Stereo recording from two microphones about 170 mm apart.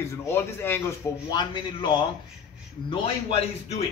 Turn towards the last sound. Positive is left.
turn(degrees=40)  # may be behind; listen again after turning